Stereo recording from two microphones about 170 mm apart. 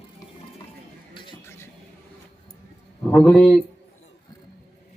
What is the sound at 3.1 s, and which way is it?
Speech, 5° left (ahead or behind).